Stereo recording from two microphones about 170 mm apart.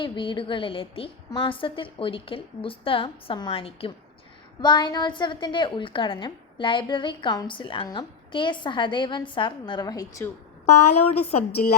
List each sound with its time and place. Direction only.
0.0 s a woman's voice: 30° left (ahead or behind)
10.7 s a woman's voice: 35° left (ahead or behind)